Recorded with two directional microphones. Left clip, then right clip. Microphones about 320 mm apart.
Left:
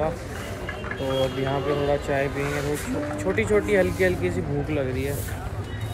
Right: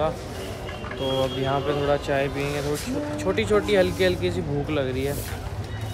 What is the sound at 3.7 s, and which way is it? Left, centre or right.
Speech, right.